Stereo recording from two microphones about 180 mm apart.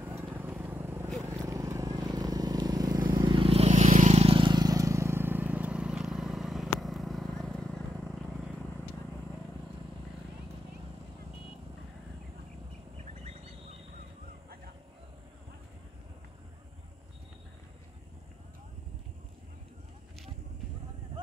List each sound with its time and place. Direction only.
0.0 s vehicle: 10° right (ahead or behind)
13.0 s bird: 35° right (ahead or behind)